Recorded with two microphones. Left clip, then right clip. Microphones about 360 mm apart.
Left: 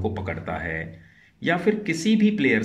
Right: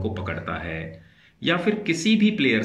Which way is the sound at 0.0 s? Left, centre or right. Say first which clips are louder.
Even; centre.